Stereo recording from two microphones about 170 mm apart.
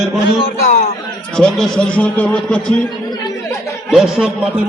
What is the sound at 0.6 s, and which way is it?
Speech, 45° left (ahead or behind).